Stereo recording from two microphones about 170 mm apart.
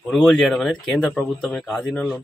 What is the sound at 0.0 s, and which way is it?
A man's voice, 5° left (ahead or behind).